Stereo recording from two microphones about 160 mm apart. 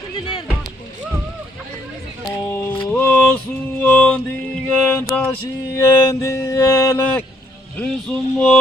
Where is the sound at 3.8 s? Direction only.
10° left (ahead or behind).